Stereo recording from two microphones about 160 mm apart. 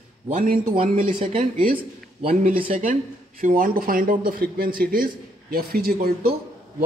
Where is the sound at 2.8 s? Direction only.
55° right (ahead or behind).